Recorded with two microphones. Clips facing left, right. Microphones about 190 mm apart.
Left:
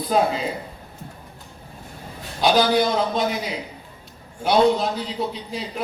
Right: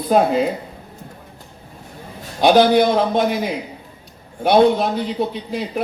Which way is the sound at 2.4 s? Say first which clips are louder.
Right 6 dB; 55° right (ahead or behind).